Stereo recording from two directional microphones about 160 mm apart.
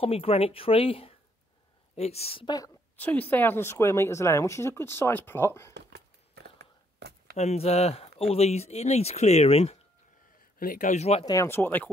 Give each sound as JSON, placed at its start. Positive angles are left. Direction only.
{"t": 0.0, "sound": "speech", "side_deg": 35}
{"t": 3.0, "sound": "speech", "side_deg": 10}
{"t": 5.8, "sound": "a sound", "side_deg": -90}
{"t": 7.3, "sound": "speech", "side_deg": 40}
{"t": 10.6, "sound": "a man's voice", "side_deg": 55}
{"t": 11.2, "sound": "speech", "side_deg": 15}